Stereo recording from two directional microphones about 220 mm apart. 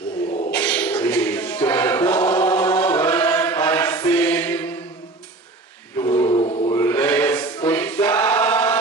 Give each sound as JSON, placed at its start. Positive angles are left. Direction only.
{"t": 0.5, "sound": "music", "side_deg": 5}
{"t": 5.9, "sound": "a sound", "side_deg": 10}
{"t": 6.3, "sound": "chant", "side_deg": 25}
{"t": 6.7, "sound": "choir", "side_deg": 10}